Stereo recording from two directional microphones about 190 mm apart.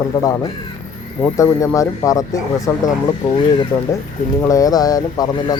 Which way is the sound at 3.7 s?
5° left (ahead or behind).